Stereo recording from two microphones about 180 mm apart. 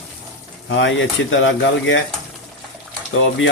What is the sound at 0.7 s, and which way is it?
Speech, 90° left.